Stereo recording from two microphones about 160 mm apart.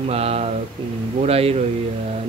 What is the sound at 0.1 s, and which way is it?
Speech, 40° right (ahead or behind).